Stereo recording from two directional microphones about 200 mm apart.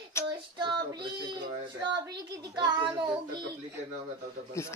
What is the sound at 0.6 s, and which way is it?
Child singing, 25° right (ahead or behind).